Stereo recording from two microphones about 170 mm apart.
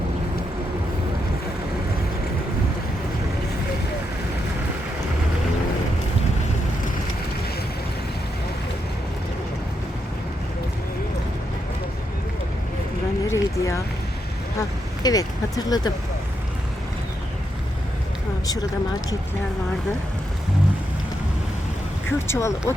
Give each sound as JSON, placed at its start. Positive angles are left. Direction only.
{"t": 13.3, "sound": "a sound", "side_deg": 20}
{"t": 15.0, "sound": "speech", "side_deg": 20}
{"t": 22.3, "sound": "speech", "side_deg": 15}